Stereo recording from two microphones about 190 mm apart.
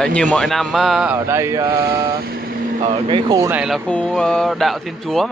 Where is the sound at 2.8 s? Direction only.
25° right (ahead or behind).